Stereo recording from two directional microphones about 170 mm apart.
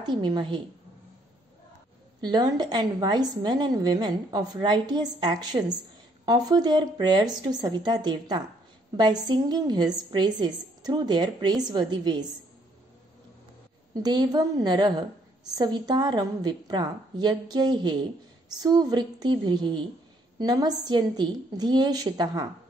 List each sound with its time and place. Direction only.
0.0 s a woman's voice: 25° right (ahead or behind)
2.2 s a woman's voice: 25° right (ahead or behind)
13.9 s a woman's voice: 25° right (ahead or behind)